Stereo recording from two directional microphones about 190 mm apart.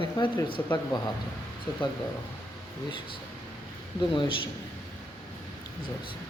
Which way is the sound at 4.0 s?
25° left (ahead or behind).